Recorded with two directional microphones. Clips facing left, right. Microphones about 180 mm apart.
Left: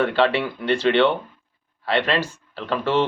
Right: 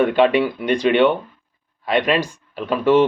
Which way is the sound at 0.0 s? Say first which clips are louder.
Right 4 dB; 15° right (ahead or behind).